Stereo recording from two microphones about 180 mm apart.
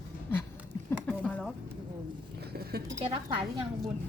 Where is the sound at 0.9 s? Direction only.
10° left (ahead or behind).